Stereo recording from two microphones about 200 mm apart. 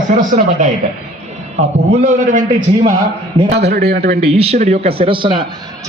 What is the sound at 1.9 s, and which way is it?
Speech, 40° right (ahead or behind).